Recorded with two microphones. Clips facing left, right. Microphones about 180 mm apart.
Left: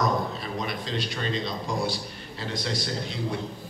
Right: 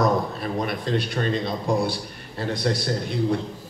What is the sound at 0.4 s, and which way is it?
A man's voice, 55° right (ahead or behind).